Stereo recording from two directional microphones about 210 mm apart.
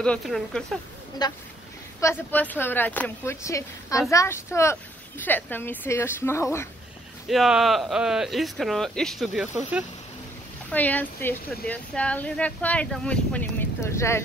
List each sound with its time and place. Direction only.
0.0 s speech: 5° left (ahead or behind)
1.2 s speech: 20° left (ahead or behind)
7.2 s speech: centre (ahead or behind)
10.7 s speech: 5° left (ahead or behind)